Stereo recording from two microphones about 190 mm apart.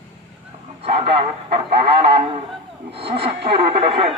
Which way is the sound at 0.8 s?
30° right (ahead or behind).